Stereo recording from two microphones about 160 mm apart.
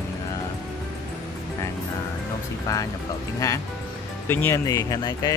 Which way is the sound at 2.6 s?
20° left (ahead or behind).